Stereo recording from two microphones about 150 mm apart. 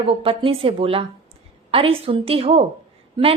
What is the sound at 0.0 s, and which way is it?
A woman's voice, 40° right (ahead or behind).